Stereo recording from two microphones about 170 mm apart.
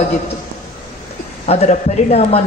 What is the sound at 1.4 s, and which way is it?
Speech, 40° left (ahead or behind).